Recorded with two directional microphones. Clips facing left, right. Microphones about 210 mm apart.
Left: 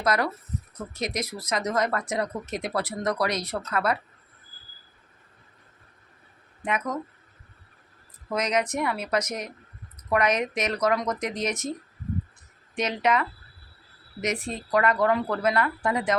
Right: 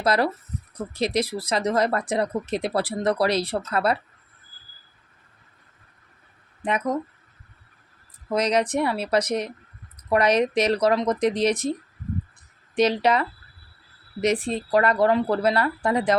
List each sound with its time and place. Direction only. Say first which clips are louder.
0.0 s speech: right 3 dB; 30° right (ahead or behind)
6.7 s speech: right 4 dB; 30° right (ahead or behind)
8.3 s speech: right 4 dB; 30° right (ahead or behind)
12.7 s speech: right 5 dB; 35° right (ahead or behind)